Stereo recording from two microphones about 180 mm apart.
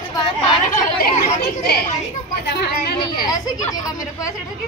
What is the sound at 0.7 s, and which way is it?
Speech, 45° left (ahead or behind).